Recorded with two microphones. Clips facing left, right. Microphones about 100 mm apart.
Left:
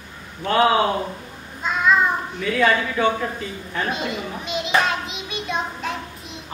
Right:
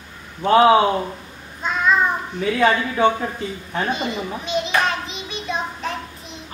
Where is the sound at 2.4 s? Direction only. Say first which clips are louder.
Right 2 dB; 30° right (ahead or behind).